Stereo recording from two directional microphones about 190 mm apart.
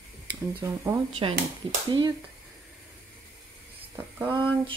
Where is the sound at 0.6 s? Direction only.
10° right (ahead or behind).